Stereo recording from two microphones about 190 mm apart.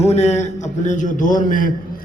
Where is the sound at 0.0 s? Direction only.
35° left (ahead or behind).